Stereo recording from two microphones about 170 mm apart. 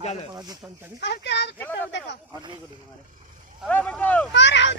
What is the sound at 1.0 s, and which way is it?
Speech, 85° left.